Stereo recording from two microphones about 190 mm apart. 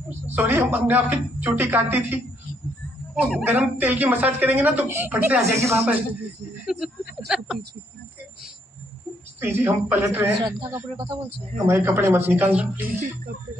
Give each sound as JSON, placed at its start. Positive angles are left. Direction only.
{"t": 0.3, "sound": "a woman's voice", "side_deg": -10}
{"t": 3.3, "sound": "a woman's voice", "side_deg": -5}
{"t": 6.6, "sound": "a sound", "side_deg": 0}
{"t": 7.2, "sound": "speech", "side_deg": -5}
{"t": 9.4, "sound": "a woman's voice", "side_deg": -10}
{"t": 10.4, "sound": "a woman's voice", "side_deg": -20}